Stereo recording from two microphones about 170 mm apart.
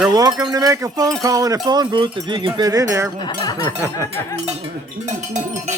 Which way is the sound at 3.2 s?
25° left (ahead or behind).